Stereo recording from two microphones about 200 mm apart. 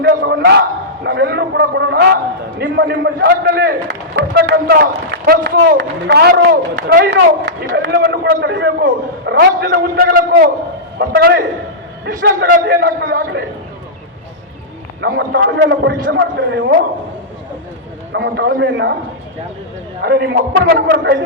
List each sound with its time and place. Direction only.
0.1 s a sound: 45° right (ahead or behind)
0.4 s a man's voice: 60° right (ahead or behind)
15.0 s a man's voice: 55° right (ahead or behind)
18.1 s a man's voice: 55° right (ahead or behind)
20.0 s a man's voice: 50° right (ahead or behind)